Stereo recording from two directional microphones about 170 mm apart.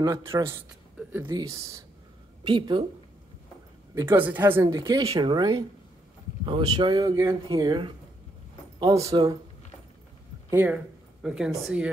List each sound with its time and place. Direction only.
0.0 s speech: 15° right (ahead or behind)
3.9 s speech: 15° right (ahead or behind)
4.6 s speech: 25° right (ahead or behind)
10.5 s speech: 10° right (ahead or behind)